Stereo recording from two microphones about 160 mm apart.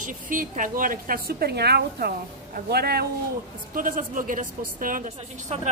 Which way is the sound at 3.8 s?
55° right (ahead or behind).